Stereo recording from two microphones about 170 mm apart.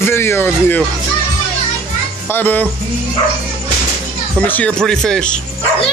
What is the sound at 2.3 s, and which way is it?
Speech, 10° left (ahead or behind).